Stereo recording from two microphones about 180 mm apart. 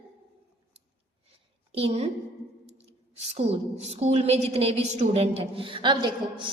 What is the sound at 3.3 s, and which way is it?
A woman's voice, 35° right (ahead or behind).